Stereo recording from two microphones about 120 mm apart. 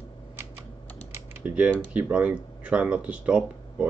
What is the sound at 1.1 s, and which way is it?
Typing, 20° right (ahead or behind).